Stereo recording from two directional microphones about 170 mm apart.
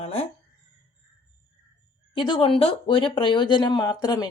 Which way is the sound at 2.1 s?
30° left (ahead or behind).